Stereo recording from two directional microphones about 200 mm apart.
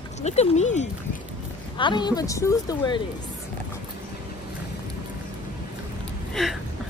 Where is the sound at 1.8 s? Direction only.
20° left (ahead or behind).